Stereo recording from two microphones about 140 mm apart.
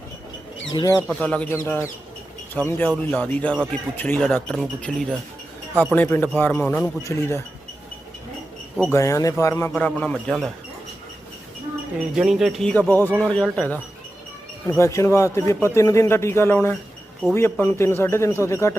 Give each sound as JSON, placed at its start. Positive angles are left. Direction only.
{"t": 0.7, "sound": "speech", "side_deg": 30}
{"t": 0.9, "sound": "speech", "side_deg": 10}
{"t": 7.0, "sound": "speech", "side_deg": 20}
{"t": 8.9, "sound": "speech", "side_deg": 20}
{"t": 12.1, "sound": "speech", "side_deg": -5}
{"t": 14.7, "sound": "speech", "side_deg": 20}